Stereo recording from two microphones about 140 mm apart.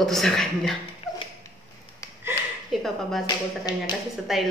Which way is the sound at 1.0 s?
45° left (ahead or behind).